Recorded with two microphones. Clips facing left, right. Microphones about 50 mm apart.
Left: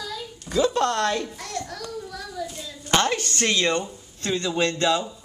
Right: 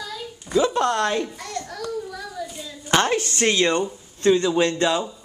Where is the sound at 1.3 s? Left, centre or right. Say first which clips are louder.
Right 1 dB; centre.